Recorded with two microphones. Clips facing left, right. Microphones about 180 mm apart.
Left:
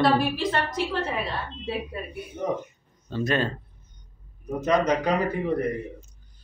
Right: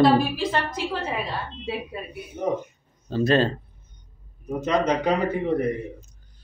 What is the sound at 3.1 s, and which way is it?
Speech, 30° right (ahead or behind).